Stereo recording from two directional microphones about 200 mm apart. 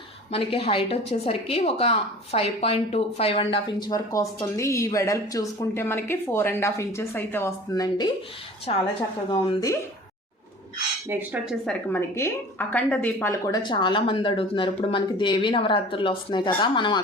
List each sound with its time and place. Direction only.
0.3 s a woman's voice: 30° left (ahead or behind)
9.5 s speech: 15° left (ahead or behind)
11.1 s dishes: 10° right (ahead or behind)
11.9 s speech: 10° left (ahead or behind)
13.6 s a woman's voice: 25° left (ahead or behind)